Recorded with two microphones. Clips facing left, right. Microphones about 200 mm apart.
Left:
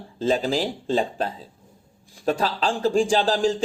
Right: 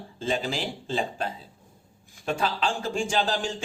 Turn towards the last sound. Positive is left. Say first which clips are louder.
# left 7 dB
turn(degrees=35)  # may be behind; listen again after turning